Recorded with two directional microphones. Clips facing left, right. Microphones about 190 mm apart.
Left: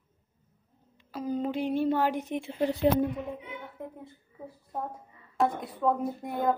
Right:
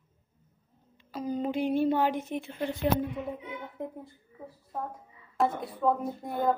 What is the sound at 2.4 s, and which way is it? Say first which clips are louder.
Speech: left 8 dB; 35° left (ahead or behind).